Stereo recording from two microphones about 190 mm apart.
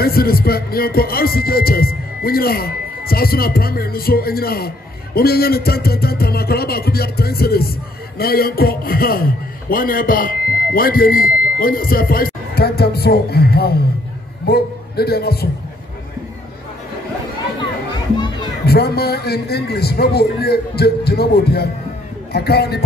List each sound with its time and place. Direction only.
0.0 s a man's voice: 50° left (ahead or behind)
18.1 s music: 25° left (ahead or behind)
18.7 s a man's voice: 55° left (ahead or behind)